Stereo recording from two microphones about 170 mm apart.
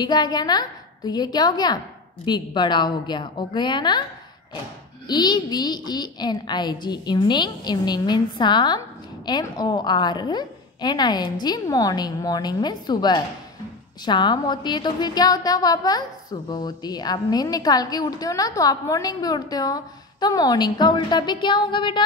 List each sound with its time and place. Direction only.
0.0 s a woman's voice: 25° left (ahead or behind)
5.0 s a woman's voice: 25° left (ahead or behind)